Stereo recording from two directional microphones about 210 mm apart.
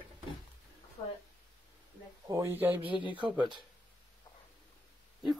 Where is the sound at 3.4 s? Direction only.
20° right (ahead or behind).